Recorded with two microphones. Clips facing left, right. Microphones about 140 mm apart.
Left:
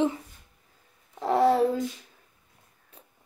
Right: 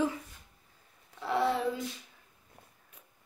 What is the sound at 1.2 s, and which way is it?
Speech, 40° left (ahead or behind).